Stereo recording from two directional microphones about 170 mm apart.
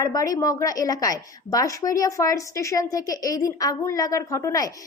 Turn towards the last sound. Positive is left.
turn(degrees=20)  # may be behind; listen again after turning